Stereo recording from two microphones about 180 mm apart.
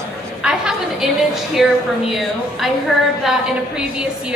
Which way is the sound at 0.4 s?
5° right (ahead or behind).